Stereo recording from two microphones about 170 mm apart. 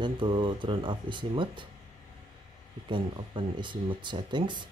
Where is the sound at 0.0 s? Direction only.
30° right (ahead or behind).